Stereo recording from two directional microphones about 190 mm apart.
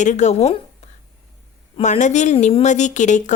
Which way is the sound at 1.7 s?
40° left (ahead or behind).